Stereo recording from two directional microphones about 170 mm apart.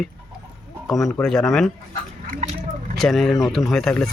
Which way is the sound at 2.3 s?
45° right (ahead or behind).